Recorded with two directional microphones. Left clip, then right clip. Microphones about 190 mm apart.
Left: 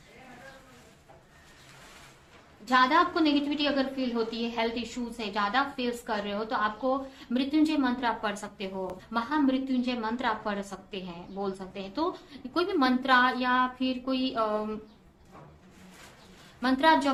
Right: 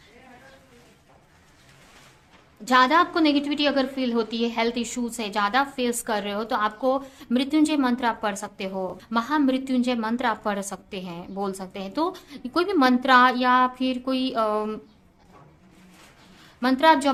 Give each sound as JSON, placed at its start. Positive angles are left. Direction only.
{"t": 2.6, "sound": "a woman's voice", "side_deg": -45}
{"t": 16.6, "sound": "speech", "side_deg": -40}